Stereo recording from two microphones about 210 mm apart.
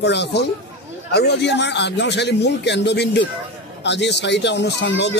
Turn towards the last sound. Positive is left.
turn(degrees=55)  # may be behind; listen again after turning